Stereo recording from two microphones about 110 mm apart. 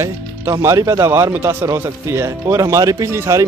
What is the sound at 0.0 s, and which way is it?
Speech, 25° right (ahead or behind).